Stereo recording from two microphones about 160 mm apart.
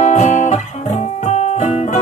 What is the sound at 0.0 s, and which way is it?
Music, 45° left (ahead or behind).